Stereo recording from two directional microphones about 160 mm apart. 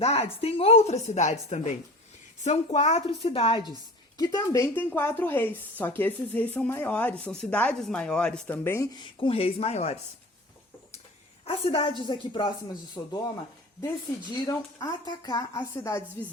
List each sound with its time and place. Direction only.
0.0 s a woman's voice: 40° left (ahead or behind); by 8.9 s 15° left (ahead or behind)
9.0 s speech: 30° left (ahead or behind)
11.4 s a woman's voice: 35° left (ahead or behind); by 16.0 s 15° left (ahead or behind)